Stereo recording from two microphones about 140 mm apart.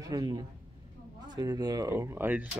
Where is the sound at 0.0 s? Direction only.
25° right (ahead or behind).